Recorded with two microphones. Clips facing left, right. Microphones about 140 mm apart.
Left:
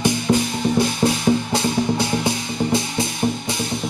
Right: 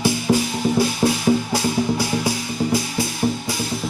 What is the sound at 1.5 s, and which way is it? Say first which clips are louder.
Music: even; 20° left (ahead or behind).